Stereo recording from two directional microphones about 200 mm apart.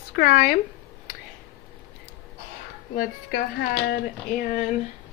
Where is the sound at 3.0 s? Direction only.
50° left (ahead or behind).